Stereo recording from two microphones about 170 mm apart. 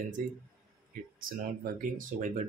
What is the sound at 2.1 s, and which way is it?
Speech, 55° right (ahead or behind).